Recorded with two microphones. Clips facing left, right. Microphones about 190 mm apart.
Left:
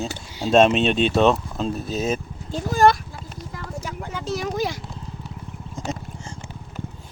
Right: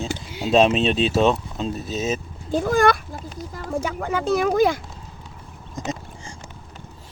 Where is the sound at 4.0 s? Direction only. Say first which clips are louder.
Right 6 dB; 60° right (ahead or behind).